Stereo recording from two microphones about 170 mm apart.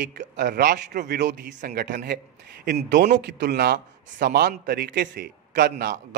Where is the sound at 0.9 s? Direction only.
50° right (ahead or behind).